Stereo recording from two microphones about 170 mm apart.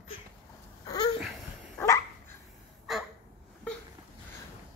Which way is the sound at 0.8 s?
25° left (ahead or behind).